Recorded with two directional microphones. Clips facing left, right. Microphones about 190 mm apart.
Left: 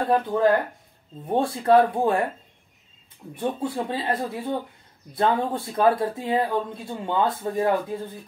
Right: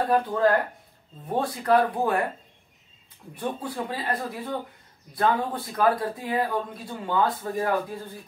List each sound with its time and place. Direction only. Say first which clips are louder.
0.0 s speech: left 1 dB; 20° left (ahead or behind)
3.3 s speech: left 4 dB; 25° left (ahead or behind)